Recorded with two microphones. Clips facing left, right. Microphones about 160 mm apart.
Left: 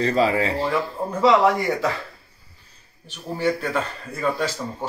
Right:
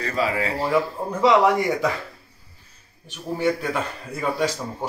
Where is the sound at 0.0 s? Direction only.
30° left (ahead or behind).